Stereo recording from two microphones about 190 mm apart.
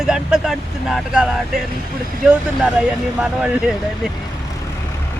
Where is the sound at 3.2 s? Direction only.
5° right (ahead or behind).